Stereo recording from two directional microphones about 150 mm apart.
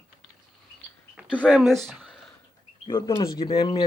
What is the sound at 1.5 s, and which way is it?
Speech, centre (ahead or behind).